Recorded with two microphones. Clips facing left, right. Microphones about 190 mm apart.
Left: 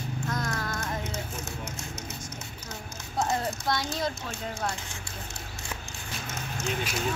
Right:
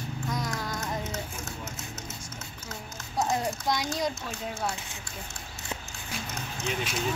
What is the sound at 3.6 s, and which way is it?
Speech, 15° right (ahead or behind).